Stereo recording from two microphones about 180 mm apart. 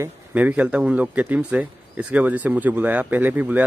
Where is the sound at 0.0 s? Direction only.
10° right (ahead or behind).